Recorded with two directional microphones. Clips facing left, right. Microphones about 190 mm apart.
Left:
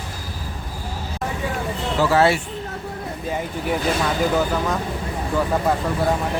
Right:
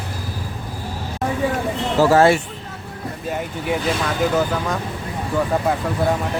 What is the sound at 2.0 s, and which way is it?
Speech, 45° right (ahead or behind).